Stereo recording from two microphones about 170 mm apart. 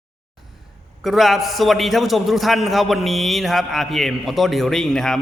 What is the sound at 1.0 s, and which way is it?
A man's voice, centre (ahead or behind).